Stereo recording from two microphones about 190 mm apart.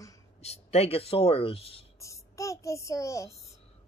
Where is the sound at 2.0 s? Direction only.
15° left (ahead or behind).